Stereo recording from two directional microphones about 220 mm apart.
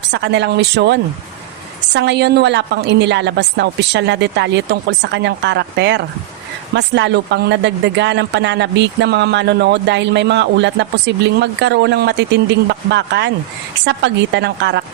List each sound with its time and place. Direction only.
0.1 s speech: 50° right (ahead or behind)